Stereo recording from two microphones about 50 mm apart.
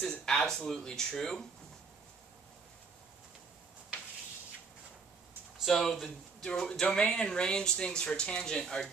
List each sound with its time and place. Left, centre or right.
0.1 s speech: centre
5.7 s speech: centre